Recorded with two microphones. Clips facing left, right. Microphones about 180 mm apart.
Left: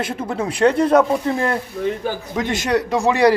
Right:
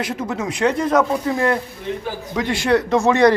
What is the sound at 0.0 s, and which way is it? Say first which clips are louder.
Speech: left 1 dB; 30° left (ahead or behind).